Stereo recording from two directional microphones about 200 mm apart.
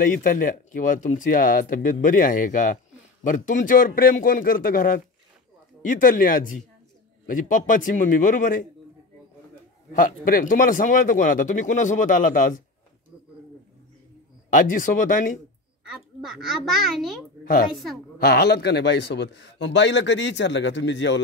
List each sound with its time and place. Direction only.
0.2 s a man's voice: 45° left (ahead or behind)
9.9 s speech: 45° left (ahead or behind)
14.5 s speech: 40° left (ahead or behind)
15.8 s a child's voice: 5° right (ahead or behind)
18.2 s a man's voice: 55° left (ahead or behind)